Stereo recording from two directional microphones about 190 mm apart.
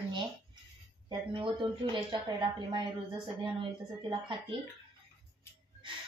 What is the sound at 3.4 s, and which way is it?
A woman's voice, 25° right (ahead or behind).